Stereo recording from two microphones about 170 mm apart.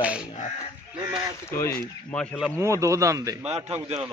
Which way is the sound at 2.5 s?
15° right (ahead or behind).